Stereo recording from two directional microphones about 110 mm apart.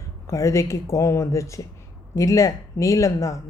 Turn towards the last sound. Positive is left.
turn(degrees=30)  # may be behind; listen again after turning